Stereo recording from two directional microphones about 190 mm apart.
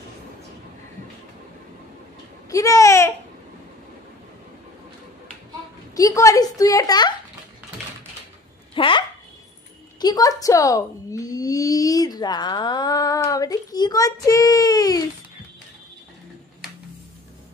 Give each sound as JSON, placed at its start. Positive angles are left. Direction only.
{"t": 2.5, "sound": "a child's voice", "side_deg": 15}
{"t": 5.9, "sound": "speech", "side_deg": 15}
{"t": 8.7, "sound": "speech", "side_deg": 25}